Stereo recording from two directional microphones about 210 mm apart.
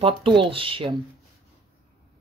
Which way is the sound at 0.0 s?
25° right (ahead or behind).